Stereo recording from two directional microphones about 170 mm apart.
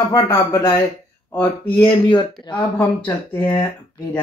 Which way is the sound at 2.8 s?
10° left (ahead or behind).